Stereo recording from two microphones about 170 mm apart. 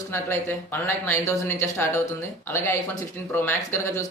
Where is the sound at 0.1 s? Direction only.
15° left (ahead or behind).